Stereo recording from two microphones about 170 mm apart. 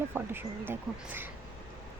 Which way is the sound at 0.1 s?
10° right (ahead or behind).